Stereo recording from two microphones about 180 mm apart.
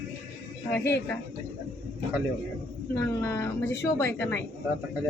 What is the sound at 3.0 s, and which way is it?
Speech, 15° left (ahead or behind).